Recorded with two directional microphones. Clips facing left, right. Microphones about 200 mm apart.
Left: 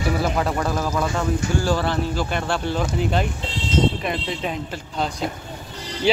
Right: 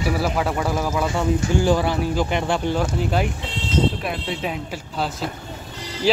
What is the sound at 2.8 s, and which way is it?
Speech, 5° right (ahead or behind).